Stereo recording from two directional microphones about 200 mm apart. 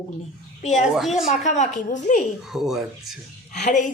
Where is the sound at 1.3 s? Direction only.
35° left (ahead or behind).